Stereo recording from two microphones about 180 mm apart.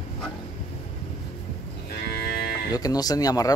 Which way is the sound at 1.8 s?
60° left (ahead or behind).